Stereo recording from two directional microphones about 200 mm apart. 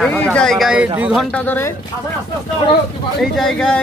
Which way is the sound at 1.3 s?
10° left (ahead or behind).